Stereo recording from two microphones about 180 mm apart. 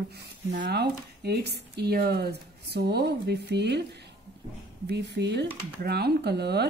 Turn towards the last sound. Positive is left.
turn(degrees=-65)  # may be behind; listen again after turning